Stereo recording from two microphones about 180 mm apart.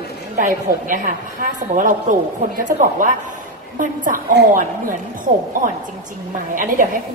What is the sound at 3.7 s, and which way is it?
A woman's voice, 50° right (ahead or behind).